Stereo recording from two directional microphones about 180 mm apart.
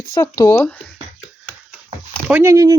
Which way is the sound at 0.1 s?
15° left (ahead or behind).